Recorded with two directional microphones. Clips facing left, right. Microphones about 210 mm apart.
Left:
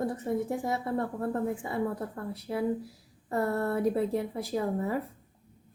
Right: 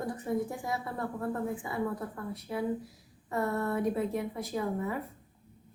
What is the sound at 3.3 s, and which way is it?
A woman's voice, 35° left (ahead or behind).